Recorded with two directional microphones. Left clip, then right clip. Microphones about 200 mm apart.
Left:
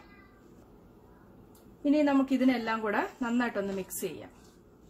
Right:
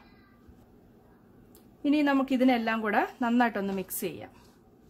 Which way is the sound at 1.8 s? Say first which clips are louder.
Even; 45° right (ahead or behind).